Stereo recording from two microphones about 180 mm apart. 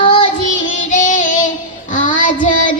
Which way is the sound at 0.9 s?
45° left (ahead or behind).